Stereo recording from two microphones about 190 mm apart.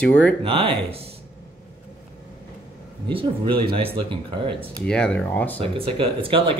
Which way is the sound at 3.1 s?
25° right (ahead or behind).